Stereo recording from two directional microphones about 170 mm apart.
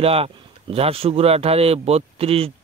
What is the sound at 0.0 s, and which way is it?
Speech, 35° right (ahead or behind).